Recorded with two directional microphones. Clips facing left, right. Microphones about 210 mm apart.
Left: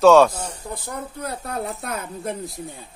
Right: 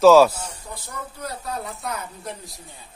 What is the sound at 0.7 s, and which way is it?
Speech, 55° left (ahead or behind).